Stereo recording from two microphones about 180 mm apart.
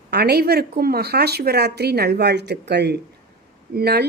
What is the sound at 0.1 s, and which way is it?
A woman's voice, 60° right (ahead or behind).